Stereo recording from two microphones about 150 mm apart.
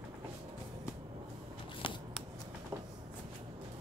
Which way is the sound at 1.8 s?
35° left (ahead or behind).